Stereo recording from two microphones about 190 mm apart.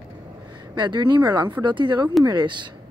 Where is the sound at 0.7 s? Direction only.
25° right (ahead or behind).